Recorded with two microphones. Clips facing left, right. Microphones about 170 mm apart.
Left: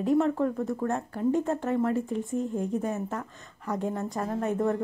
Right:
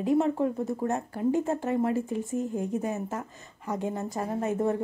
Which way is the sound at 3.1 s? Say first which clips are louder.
Even; 20° right (ahead or behind).